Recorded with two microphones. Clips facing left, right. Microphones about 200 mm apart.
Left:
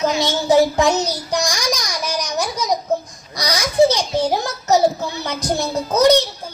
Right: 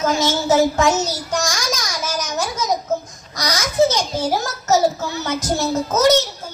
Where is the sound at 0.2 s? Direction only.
15° left (ahead or behind).